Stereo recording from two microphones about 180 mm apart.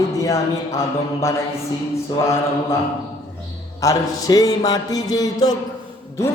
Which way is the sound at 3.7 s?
20° left (ahead or behind).